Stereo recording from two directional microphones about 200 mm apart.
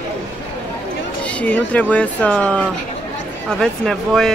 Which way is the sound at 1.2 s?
5° left (ahead or behind).